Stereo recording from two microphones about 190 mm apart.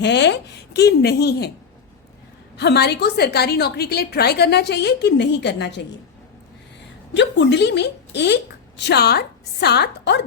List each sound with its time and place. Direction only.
0.0 s a woman's voice: 65° left (ahead or behind)
2.6 s a woman's voice: 60° left (ahead or behind)
7.2 s a woman's voice: 65° left (ahead or behind)